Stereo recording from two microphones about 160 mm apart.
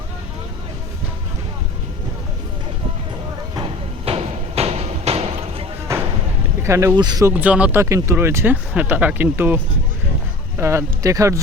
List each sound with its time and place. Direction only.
4.0 s a sound: 40° right (ahead or behind)
6.6 s speech: 15° right (ahead or behind)
7.3 s speech: 10° right (ahead or behind)
10.6 s speech: 15° right (ahead or behind)